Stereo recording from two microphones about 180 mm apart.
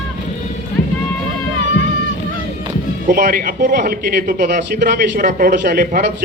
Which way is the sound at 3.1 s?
55° right (ahead or behind).